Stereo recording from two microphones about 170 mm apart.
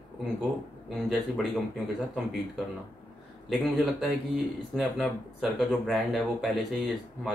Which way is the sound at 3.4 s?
Centre (ahead or behind).